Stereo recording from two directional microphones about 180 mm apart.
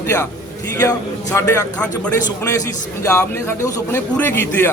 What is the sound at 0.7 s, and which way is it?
A man's voice, 20° left (ahead or behind).